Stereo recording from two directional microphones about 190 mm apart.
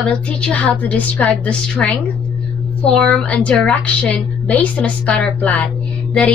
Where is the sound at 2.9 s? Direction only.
5° left (ahead or behind).